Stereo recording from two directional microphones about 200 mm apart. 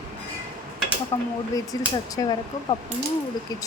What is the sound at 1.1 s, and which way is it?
A woman's voice, 10° left (ahead or behind).